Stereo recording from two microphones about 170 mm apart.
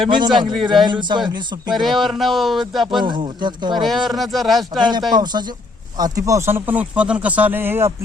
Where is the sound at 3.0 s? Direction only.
25° right (ahead or behind).